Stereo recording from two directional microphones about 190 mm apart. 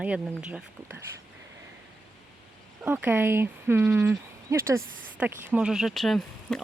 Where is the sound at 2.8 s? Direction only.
10° right (ahead or behind).